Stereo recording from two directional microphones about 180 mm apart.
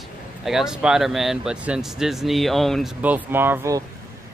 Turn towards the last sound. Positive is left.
turn(degrees=-15)  # may be behind; listen again after turning